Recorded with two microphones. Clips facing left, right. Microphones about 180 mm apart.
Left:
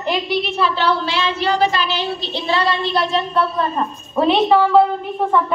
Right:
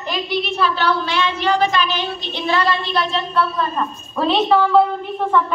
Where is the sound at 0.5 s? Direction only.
25° left (ahead or behind).